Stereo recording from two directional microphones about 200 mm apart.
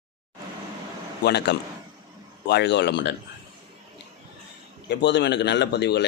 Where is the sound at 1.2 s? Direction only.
55° left (ahead or behind).